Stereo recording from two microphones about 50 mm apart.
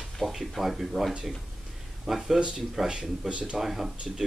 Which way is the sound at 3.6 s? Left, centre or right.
Centre.